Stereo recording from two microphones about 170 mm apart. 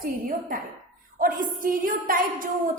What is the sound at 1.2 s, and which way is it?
A woman's voice, 55° right (ahead or behind).